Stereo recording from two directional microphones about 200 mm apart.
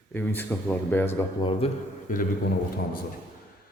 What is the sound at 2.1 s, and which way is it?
Speech, 40° left (ahead or behind).